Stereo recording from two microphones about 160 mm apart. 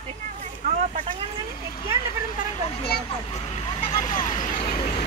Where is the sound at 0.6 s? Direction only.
55° right (ahead or behind).